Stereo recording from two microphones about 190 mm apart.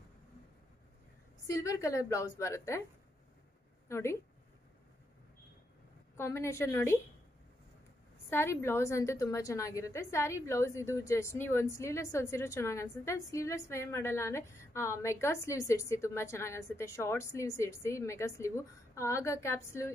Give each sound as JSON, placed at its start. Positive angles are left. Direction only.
{"t": 1.5, "sound": "a woman's voice", "side_deg": 15}
{"t": 3.9, "sound": "a woman's voice", "side_deg": 15}
{"t": 6.1, "sound": "a woman's voice", "side_deg": 15}
{"t": 8.3, "sound": "a woman's voice", "side_deg": 10}